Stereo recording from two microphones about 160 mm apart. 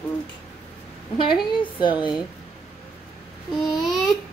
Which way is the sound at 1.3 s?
30° left (ahead or behind).